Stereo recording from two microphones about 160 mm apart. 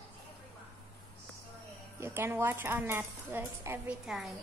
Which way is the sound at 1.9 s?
15° right (ahead or behind).